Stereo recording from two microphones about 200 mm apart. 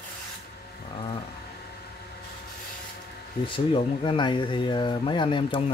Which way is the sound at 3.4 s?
25° left (ahead or behind).